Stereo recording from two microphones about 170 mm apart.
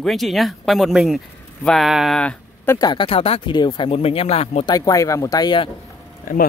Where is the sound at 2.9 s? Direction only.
30° left (ahead or behind).